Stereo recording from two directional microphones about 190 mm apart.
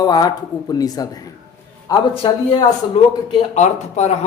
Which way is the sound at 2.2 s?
30° left (ahead or behind).